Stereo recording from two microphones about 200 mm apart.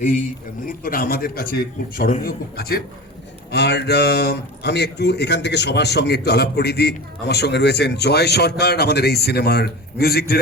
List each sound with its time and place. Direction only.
0.7 s a man's voice: 45° left (ahead or behind)